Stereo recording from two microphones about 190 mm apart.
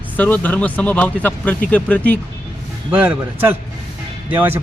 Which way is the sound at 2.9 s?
10° right (ahead or behind).